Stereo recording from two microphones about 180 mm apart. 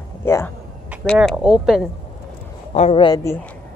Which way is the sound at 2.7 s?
35° left (ahead or behind).